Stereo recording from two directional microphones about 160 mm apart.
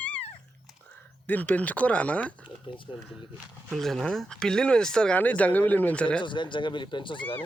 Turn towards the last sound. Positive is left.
turn(degrees=30)  # may be behind; listen again after turning